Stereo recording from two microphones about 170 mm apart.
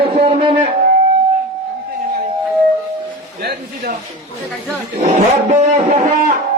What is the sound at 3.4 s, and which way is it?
Speech, 65° right (ahead or behind).